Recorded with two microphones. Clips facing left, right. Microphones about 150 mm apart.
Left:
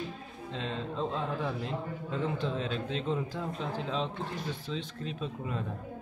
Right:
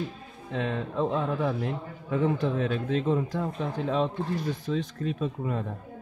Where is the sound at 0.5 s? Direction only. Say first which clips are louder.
Right 6 dB; 60° right (ahead or behind).